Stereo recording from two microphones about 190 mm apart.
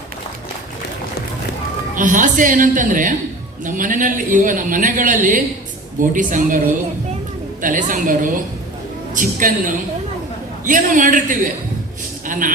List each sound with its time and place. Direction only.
2.0 s a man's voice: 45° right (ahead or behind)
7.6 s a man's voice: 45° right (ahead or behind)